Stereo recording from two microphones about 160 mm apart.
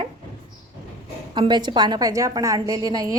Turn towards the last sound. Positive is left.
turn(degrees=-20)  # may be behind; listen again after turning